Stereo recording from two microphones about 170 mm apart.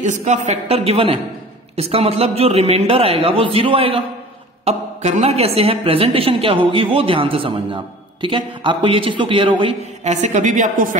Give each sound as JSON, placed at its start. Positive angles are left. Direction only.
{"t": 0.0, "sound": "a woman's voice", "side_deg": -45}